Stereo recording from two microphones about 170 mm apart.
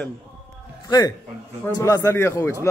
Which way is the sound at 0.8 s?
25° left (ahead or behind).